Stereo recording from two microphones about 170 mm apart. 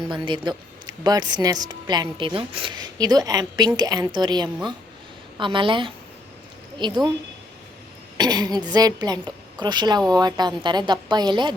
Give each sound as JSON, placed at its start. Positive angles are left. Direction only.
{"t": 0.1, "sound": "speech", "side_deg": -25}
{"t": 8.2, "sound": "speech", "side_deg": -25}